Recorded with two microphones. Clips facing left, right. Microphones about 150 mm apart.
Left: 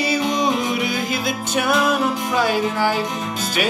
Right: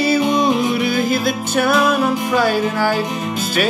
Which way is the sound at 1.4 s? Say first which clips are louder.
Right 2 dB; 20° left (ahead or behind).